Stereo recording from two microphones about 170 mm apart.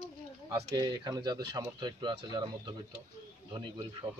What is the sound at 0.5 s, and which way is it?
Speech, 20° right (ahead or behind).